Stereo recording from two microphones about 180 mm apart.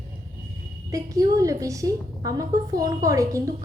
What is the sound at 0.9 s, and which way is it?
A woman's voice, 20° right (ahead or behind).